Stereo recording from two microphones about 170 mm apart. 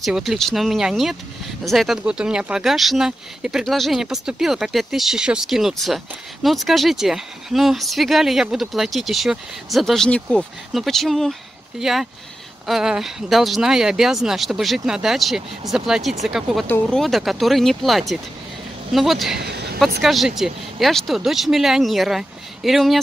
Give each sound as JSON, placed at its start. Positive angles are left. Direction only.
{"t": 0.0, "sound": "speech", "side_deg": 0}
{"t": 16.6, "sound": "speech", "side_deg": 10}
{"t": 17.0, "sound": "speech", "side_deg": 0}
{"t": 19.4, "sound": "vehicle", "side_deg": -75}
{"t": 20.0, "sound": "speech", "side_deg": 0}